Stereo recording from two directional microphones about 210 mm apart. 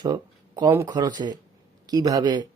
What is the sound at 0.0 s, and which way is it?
Speech, 20° right (ahead or behind).